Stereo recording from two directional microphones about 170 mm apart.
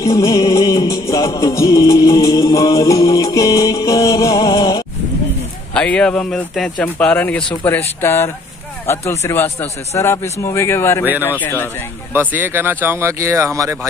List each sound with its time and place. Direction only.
0.0 s music: 20° left (ahead or behind)
5.8 s speech: 5° left (ahead or behind)
12.1 s speech: 10° right (ahead or behind)